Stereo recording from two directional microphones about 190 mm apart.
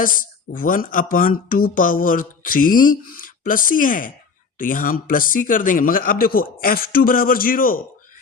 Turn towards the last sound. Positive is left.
turn(degrees=50)  # may be behind; listen again after turning